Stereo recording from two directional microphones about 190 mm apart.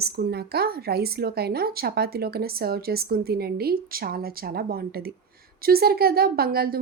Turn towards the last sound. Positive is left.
turn(degrees=-55)  # may be behind; listen again after turning